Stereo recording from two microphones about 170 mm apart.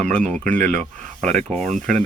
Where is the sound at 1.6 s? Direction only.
50° right (ahead or behind).